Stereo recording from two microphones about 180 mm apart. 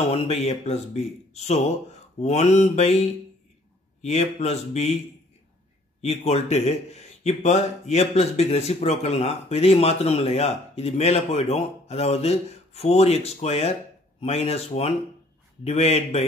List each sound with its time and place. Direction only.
0.1 s speech: 35° left (ahead or behind)
5.9 s speech: 35° left (ahead or behind)